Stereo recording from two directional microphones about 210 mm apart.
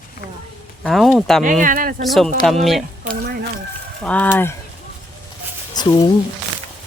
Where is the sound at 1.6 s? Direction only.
40° right (ahead or behind).